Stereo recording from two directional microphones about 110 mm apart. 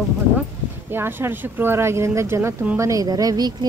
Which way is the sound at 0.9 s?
20° right (ahead or behind).